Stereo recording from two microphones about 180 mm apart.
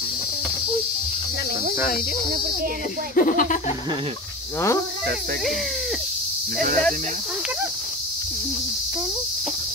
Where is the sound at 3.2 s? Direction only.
50° left (ahead or behind).